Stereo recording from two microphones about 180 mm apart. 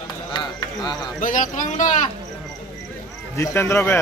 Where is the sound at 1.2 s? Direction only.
45° left (ahead or behind).